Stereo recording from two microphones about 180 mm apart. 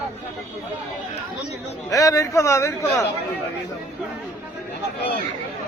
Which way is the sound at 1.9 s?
20° left (ahead or behind).